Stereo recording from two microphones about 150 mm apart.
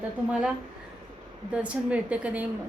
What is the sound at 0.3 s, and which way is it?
Speech, 5° right (ahead or behind).